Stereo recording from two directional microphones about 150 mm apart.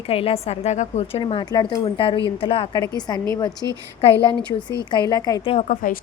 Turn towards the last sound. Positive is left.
turn(degrees=65)  # may be behind; listen again after turning